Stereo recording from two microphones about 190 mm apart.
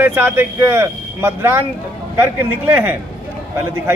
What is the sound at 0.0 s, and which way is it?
Speech, 10° right (ahead or behind).